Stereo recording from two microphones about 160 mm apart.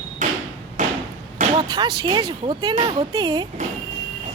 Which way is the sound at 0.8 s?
55° right (ahead or behind).